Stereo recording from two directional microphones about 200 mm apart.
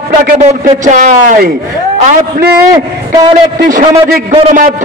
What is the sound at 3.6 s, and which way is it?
A man's voice, 45° right (ahead or behind).